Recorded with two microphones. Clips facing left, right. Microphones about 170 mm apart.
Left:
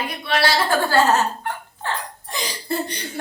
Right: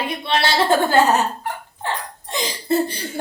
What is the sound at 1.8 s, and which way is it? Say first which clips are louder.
Laughter: right 1 dB; 20° right (ahead or behind).